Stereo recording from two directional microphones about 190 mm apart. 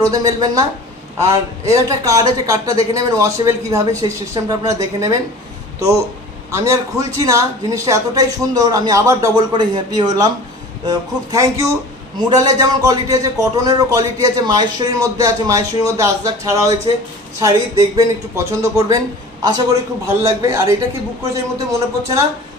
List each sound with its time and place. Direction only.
0.0 s a man's voice: 20° right (ahead or behind)
6.5 s a man's voice: 15° right (ahead or behind)